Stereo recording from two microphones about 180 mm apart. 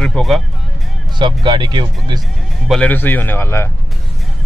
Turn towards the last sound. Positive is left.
turn(degrees=15)  # may be behind; listen again after turning